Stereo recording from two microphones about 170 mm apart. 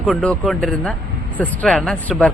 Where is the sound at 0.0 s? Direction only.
5° left (ahead or behind).